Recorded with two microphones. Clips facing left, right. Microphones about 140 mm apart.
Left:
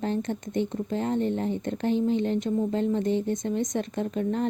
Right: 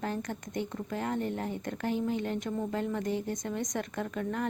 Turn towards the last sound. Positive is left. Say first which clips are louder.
# left 6 dB
turn(degrees=25)  # may be behind; listen again after turning